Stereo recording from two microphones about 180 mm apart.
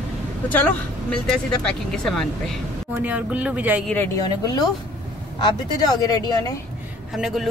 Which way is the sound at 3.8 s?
10° left (ahead or behind).